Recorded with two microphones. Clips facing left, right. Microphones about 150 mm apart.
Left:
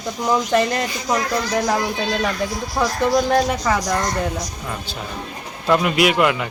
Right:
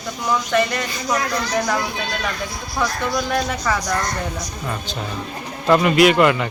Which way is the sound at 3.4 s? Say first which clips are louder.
Left 2 dB; 20° left (ahead or behind).